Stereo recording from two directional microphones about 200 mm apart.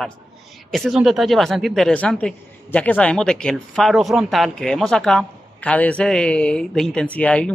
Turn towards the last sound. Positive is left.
turn(degrees=5)  # may be behind; listen again after turning